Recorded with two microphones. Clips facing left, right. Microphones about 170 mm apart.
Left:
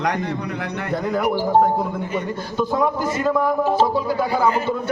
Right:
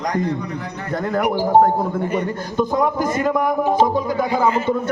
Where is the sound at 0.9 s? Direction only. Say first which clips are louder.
Right 2 dB; centre (ahead or behind).